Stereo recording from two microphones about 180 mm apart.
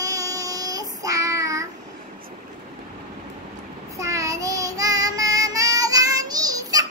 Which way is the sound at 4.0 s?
15° right (ahead or behind).